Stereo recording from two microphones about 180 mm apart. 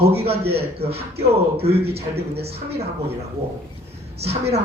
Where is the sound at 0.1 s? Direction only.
35° right (ahead or behind).